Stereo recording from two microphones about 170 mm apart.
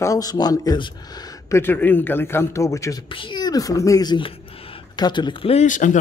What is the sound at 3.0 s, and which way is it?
Speech, 30° left (ahead or behind).